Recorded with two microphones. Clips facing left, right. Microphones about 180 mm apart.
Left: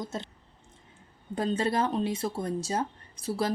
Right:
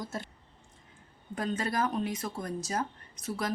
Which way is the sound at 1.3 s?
30° left (ahead or behind).